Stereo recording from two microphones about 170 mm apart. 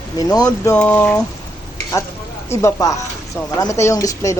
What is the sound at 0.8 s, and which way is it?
Speech, 10° left (ahead or behind).